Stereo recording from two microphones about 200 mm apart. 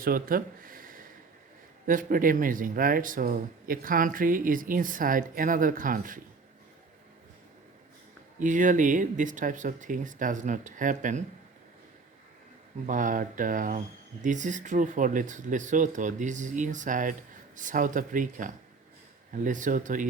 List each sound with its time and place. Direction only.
0.0 s speech: 45° right (ahead or behind)
8.4 s speech: 40° right (ahead or behind)
12.8 s speech: 40° right (ahead or behind)